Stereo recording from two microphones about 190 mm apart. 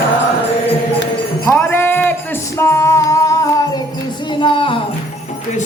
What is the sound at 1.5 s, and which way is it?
Music, 10° left (ahead or behind).